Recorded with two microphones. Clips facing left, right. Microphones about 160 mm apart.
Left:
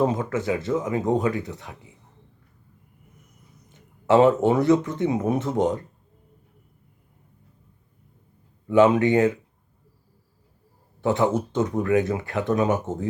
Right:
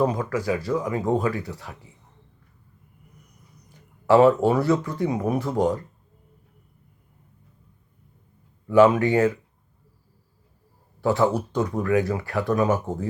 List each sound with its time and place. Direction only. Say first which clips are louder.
0.0 s speech: even; 25° left (ahead or behind)
3.7 s speech: right 1 dB; 20° left (ahead or behind)
8.7 s speech: even; 20° left (ahead or behind)
11.0 s speech: even; 20° left (ahead or behind)